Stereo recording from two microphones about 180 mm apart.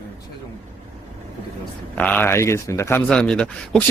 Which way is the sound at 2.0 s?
10° left (ahead or behind).